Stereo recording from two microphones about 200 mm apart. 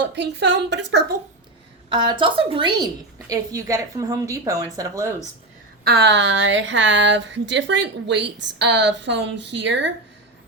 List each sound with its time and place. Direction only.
0.0 s speech: 60° right (ahead or behind)
1.9 s a woman's voice: 25° right (ahead or behind)
5.8 s speech: 55° right (ahead or behind)